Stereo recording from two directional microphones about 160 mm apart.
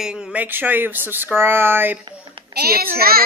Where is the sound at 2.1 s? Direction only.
30° right (ahead or behind).